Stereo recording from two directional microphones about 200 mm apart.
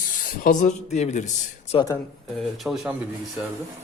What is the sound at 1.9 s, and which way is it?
Speech, centre (ahead or behind).